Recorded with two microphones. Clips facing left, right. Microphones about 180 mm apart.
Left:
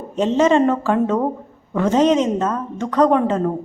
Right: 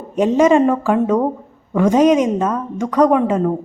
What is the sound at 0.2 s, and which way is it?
A woman's voice, 10° right (ahead or behind).